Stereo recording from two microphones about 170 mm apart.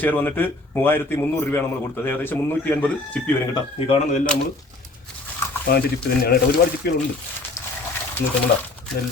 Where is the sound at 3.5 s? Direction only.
35° left (ahead or behind).